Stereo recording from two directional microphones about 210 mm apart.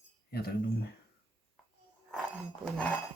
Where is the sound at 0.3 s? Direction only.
50° left (ahead or behind).